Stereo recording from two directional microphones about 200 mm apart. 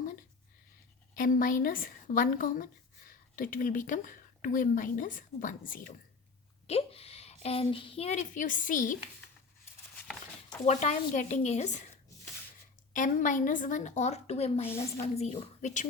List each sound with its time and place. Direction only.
1.1 s a woman's voice: 45° left (ahead or behind)
6.7 s a woman's voice: 30° left (ahead or behind)
10.7 s a woman's voice: 35° left (ahead or behind)
12.9 s a woman's voice: 40° left (ahead or behind)